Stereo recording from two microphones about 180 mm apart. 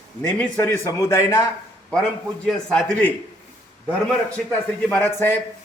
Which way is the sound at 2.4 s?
5° left (ahead or behind).